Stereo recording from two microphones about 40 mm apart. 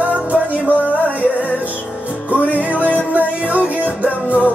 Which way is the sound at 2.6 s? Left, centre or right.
Right.